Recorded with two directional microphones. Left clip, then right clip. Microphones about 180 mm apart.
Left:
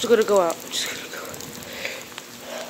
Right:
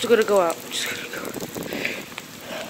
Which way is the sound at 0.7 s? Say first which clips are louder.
Even; 55° left (ahead or behind).